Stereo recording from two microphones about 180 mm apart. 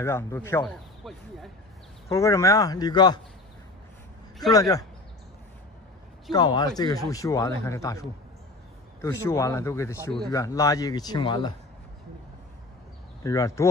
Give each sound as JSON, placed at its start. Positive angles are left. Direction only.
{"t": 0.0, "sound": "speech", "side_deg": 15}
{"t": 1.0, "sound": "a sound", "side_deg": 0}
{"t": 2.0, "sound": "speech", "side_deg": 15}
{"t": 4.5, "sound": "speech", "side_deg": 20}
{"t": 6.3, "sound": "speech", "side_deg": 25}
{"t": 13.2, "sound": "speech", "side_deg": 20}